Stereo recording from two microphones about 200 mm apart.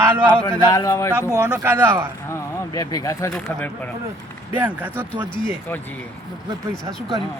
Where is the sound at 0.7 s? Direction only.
15° left (ahead or behind).